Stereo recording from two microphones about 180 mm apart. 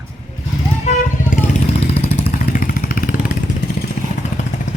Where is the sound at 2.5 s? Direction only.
50° left (ahead or behind).